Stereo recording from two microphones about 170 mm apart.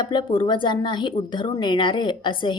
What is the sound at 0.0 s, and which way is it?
A woman's voice, 25° left (ahead or behind).